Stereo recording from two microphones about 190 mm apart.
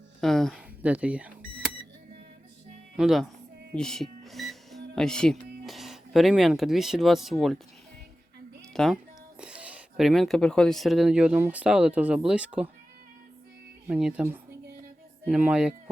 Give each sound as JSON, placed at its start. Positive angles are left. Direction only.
{"t": 0.2, "sound": "speech", "side_deg": 0}
{"t": 2.9, "sound": "speech", "side_deg": 0}
{"t": 3.8, "sound": "music", "side_deg": 5}
{"t": 4.9, "sound": "speech", "side_deg": 5}
{"t": 8.7, "sound": "speech", "side_deg": 0}
{"t": 13.8, "sound": "speech", "side_deg": -5}
{"t": 15.3, "sound": "speech", "side_deg": -5}